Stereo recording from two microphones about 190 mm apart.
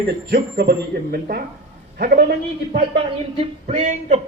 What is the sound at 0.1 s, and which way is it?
Speech, 55° right (ahead or behind).